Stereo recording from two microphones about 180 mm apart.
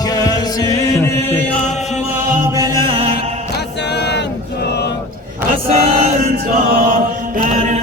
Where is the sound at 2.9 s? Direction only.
35° right (ahead or behind).